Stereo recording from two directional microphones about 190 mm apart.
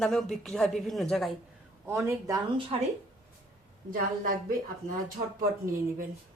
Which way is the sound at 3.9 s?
50° right (ahead or behind).